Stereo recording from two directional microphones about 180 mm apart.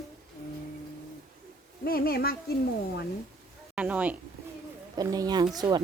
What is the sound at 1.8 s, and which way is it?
Speech, 55° left (ahead or behind).